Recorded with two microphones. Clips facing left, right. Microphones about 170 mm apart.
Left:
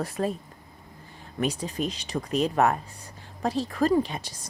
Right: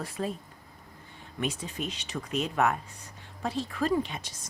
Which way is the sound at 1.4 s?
35° left (ahead or behind).